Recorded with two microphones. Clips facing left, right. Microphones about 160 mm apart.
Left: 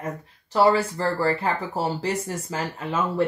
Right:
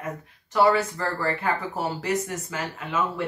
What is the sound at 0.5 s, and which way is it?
Speech, 30° left (ahead or behind).